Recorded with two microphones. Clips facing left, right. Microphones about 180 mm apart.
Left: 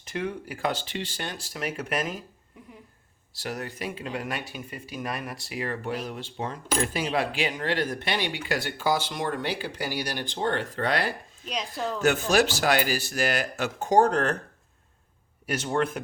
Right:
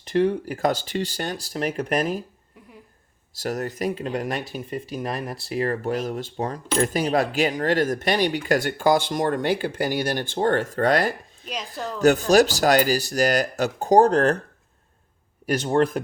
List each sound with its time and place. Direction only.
0.2 s speech: 35° right (ahead or behind)
3.3 s speech: 40° right (ahead or behind)
11.4 s a woman's voice: centre (ahead or behind)
11.9 s speech: 40° right (ahead or behind)
15.4 s speech: 35° right (ahead or behind)